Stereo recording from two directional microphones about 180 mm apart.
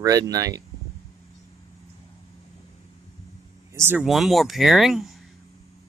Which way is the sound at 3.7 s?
10° right (ahead or behind).